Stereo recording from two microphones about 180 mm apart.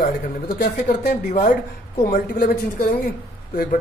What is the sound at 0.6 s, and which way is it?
Speech, 60° left (ahead or behind).